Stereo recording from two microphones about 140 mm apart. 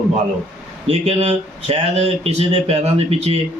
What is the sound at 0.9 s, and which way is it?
Speech, 50° right (ahead or behind).